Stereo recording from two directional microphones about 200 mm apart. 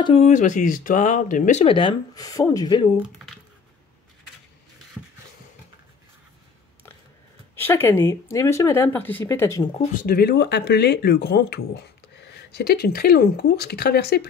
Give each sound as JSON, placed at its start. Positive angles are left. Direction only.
{"t": 0.0, "sound": "speech", "side_deg": 30}
{"t": 5.0, "sound": "a sound", "side_deg": -5}
{"t": 7.5, "sound": "speech", "side_deg": 10}
{"t": 9.8, "sound": "speech", "side_deg": 45}